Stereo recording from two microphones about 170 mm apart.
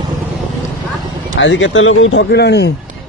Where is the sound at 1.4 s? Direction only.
90° left.